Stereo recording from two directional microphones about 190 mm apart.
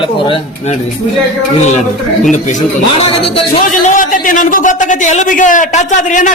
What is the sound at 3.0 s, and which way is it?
Speech, 30° left (ahead or behind).